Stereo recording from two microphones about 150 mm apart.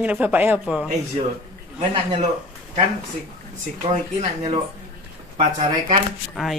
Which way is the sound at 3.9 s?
50° right (ahead or behind).